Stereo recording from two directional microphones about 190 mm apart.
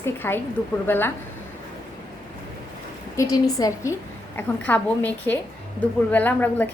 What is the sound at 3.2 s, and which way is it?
A woman's voice, 20° left (ahead or behind).